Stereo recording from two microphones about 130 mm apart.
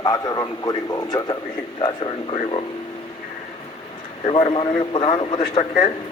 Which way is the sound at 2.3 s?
45° left (ahead or behind).